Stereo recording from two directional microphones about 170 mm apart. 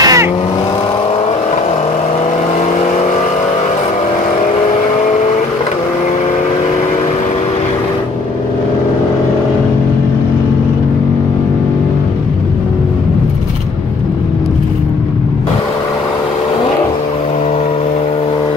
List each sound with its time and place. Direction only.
0.0 s vehicle: 20° right (ahead or behind)